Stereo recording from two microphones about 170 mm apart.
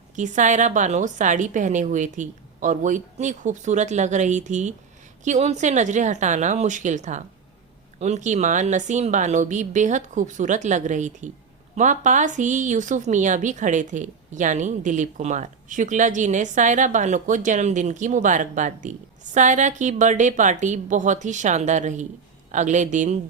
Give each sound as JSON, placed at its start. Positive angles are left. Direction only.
{"t": 0.2, "sound": "a woman's voice", "side_deg": -45}